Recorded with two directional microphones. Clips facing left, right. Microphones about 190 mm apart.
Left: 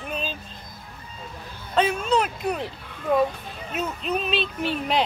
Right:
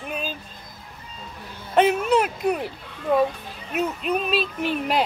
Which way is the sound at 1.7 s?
20° right (ahead or behind).